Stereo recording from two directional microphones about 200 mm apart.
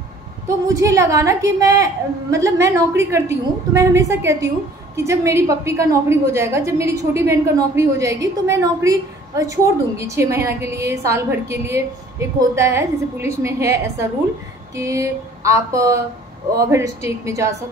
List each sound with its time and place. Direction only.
0.7 s a woman's voice: 15° right (ahead or behind)